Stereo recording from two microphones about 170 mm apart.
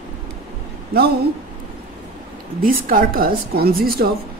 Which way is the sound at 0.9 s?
65° right (ahead or behind).